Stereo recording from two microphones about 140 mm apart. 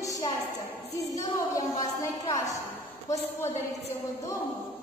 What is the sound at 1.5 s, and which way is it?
A woman's voice, 25° left (ahead or behind).